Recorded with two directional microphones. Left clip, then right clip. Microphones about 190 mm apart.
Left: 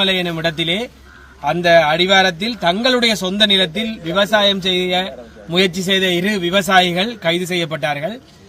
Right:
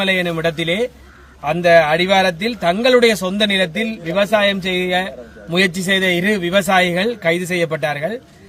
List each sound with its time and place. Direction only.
0.0 s a man's voice: 20° right (ahead or behind)